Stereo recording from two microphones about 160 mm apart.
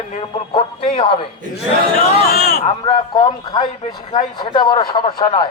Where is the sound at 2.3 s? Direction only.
65° left (ahead or behind).